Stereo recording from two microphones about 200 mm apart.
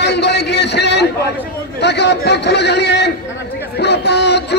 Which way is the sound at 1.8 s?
60° left (ahead or behind).